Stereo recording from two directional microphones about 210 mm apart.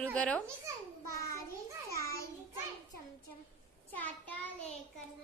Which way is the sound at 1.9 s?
15° left (ahead or behind).